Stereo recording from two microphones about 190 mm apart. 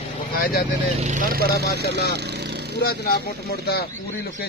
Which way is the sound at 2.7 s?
60° left (ahead or behind).